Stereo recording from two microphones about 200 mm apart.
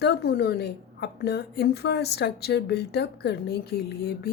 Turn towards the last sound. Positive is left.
turn(degrees=55)  # may be behind; listen again after turning